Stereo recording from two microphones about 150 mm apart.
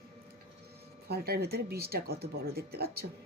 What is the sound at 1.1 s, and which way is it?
Speech, 90° right.